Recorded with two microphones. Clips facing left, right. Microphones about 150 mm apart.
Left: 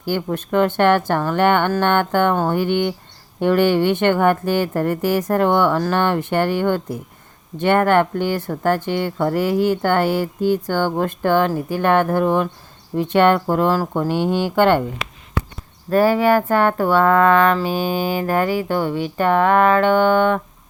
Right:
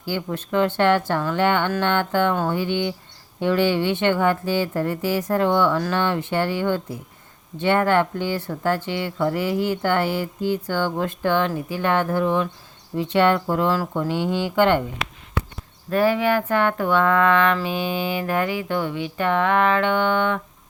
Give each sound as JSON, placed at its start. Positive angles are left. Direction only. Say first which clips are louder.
{"t": 0.0, "sound": "speech", "louder": "left 5 dB", "side_deg": 50}
{"t": 15.9, "sound": "speech", "louder": "left 4 dB", "side_deg": 40}